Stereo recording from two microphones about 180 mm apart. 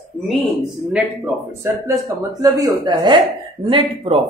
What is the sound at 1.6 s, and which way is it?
Speech, 20° right (ahead or behind).